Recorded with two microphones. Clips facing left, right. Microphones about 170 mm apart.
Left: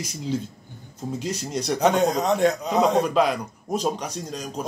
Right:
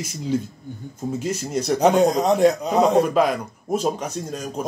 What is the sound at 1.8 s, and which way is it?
Speech, 35° right (ahead or behind).